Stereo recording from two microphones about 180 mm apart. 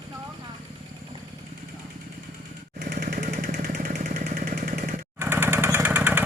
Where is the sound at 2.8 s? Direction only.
45° right (ahead or behind).